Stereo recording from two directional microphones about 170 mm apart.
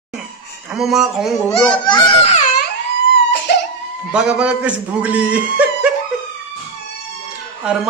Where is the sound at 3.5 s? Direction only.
75° left (ahead or behind).